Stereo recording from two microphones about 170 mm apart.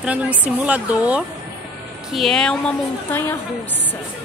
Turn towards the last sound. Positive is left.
turn(degrees=15)  # may be behind; listen again after turning